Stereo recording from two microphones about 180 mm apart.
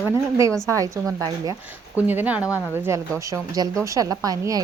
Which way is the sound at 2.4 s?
15° left (ahead or behind).